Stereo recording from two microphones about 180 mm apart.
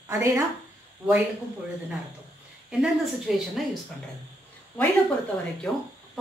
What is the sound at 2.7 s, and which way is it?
Speech, 5° right (ahead or behind).